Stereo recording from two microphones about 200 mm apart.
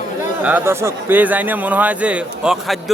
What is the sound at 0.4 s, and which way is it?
Speech, 10° right (ahead or behind).